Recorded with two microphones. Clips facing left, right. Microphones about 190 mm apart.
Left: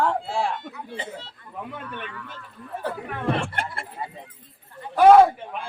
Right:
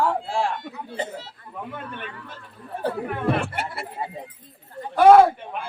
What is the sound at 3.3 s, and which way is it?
Speech, 5° right (ahead or behind).